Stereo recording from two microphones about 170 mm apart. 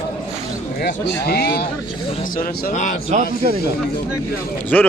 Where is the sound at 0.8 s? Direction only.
70° left (ahead or behind).